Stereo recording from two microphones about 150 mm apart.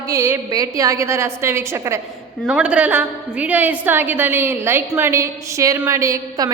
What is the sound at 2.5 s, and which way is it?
A man's voice, 5° right (ahead or behind).